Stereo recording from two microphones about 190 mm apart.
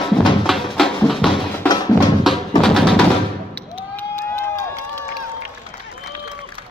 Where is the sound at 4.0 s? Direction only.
10° left (ahead or behind).